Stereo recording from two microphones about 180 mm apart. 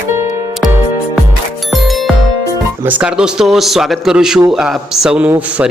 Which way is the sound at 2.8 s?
10° right (ahead or behind).